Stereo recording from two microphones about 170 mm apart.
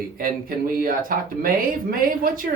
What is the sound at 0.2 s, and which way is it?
Speech, 60° right (ahead or behind).